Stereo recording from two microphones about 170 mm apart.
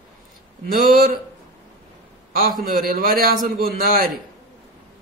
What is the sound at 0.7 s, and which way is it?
Speech, 55° right (ahead or behind).